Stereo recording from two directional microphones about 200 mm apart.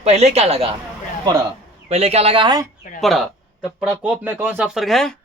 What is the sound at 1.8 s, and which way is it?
Speech, 30° right (ahead or behind).